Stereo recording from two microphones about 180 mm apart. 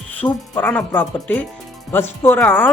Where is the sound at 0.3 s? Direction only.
10° left (ahead or behind).